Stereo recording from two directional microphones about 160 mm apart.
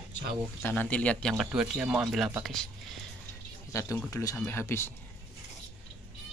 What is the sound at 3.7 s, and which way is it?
Speech, 20° left (ahead or behind).